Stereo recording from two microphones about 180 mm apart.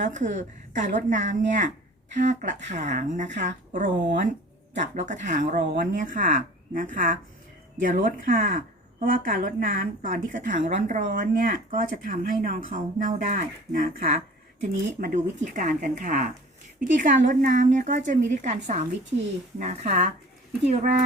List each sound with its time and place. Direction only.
0.0 s speech: 45° right (ahead or behind)